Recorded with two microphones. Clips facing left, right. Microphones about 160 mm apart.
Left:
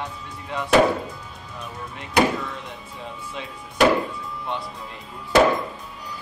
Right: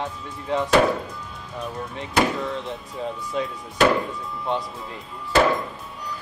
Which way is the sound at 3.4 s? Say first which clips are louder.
Right 10 dB; 40° right (ahead or behind).